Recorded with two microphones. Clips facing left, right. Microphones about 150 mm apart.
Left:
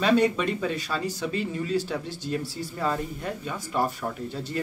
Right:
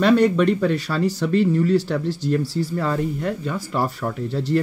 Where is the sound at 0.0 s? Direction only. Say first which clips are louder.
Right 6 dB; 60° right (ahead or behind).